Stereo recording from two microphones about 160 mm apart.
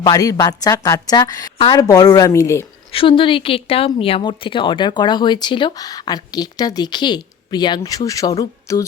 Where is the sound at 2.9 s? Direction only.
35° left (ahead or behind).